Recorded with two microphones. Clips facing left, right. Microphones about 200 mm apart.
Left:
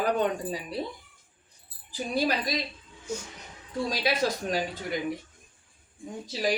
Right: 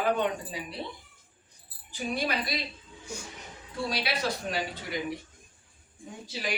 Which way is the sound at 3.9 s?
45° left (ahead or behind).